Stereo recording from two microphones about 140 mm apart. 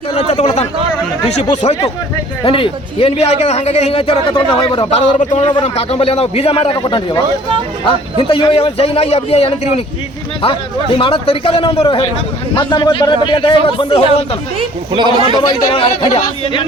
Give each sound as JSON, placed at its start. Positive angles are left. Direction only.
{"t": 0.1, "sound": "a man's voice", "side_deg": 50}
{"t": 2.4, "sound": "a man's voice", "side_deg": 40}
{"t": 4.9, "sound": "a man's voice", "side_deg": 55}
{"t": 14.9, "sound": "a man's voice", "side_deg": -35}
{"t": 15.4, "sound": "a man's voice", "side_deg": 40}